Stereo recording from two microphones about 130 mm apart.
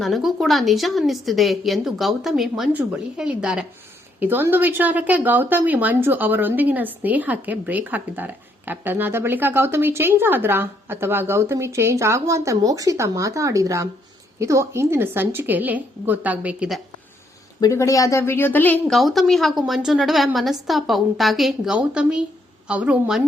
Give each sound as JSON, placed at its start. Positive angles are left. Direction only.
{"t": 0.0, "sound": "a woman's voice", "side_deg": 0}
{"t": 17.6, "sound": "speech", "side_deg": 25}
{"t": 18.9, "sound": "a woman's voice", "side_deg": 0}